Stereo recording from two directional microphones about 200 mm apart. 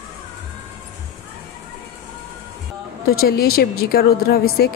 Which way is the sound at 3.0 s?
50° left (ahead or behind).